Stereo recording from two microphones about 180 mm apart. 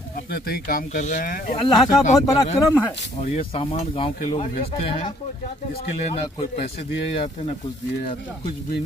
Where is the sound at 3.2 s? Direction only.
35° left (ahead or behind).